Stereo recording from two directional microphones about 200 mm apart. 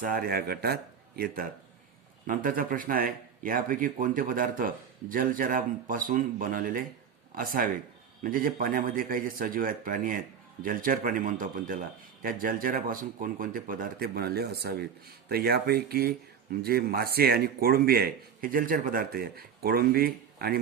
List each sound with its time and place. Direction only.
0.0 s speech: 45° right (ahead or behind)